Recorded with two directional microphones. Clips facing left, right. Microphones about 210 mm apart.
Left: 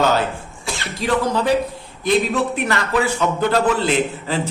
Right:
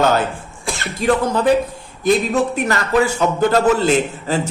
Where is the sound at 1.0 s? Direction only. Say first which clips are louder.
Right 3 dB; 50° right (ahead or behind).